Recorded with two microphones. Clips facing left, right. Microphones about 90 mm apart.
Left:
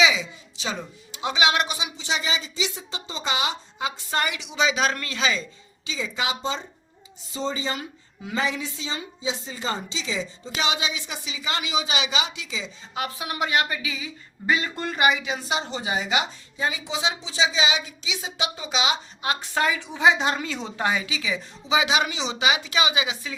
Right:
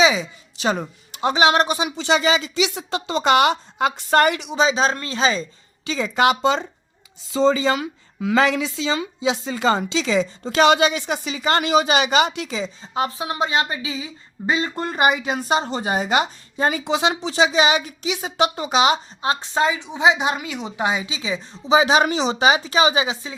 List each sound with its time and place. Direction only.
0.0 s a sound: 40° right (ahead or behind)
0.5 s a woman's voice: 50° right (ahead or behind)
2.0 s a woman's voice: 75° right (ahead or behind); by 4.6 s 50° right (ahead or behind)
4.6 s speech: 30° right (ahead or behind)
5.8 s a woman's voice: 55° right (ahead or behind); by 6.7 s 80° right
7.3 s speech: 90° right; by 12.7 s 50° right (ahead or behind)
12.8 s a woman's voice: 30° right (ahead or behind)
19.2 s a woman's voice: 30° right (ahead or behind)